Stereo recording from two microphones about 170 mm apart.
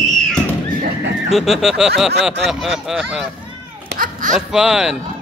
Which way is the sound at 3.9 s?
50° right (ahead or behind).